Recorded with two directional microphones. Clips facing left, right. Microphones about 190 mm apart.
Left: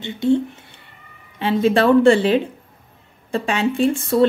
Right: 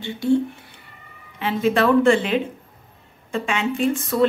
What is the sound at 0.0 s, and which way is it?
Speech, 20° left (ahead or behind).